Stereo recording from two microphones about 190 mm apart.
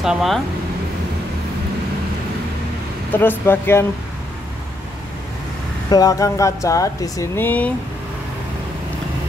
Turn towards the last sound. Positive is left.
turn(degrees=10)  # may be behind; listen again after turning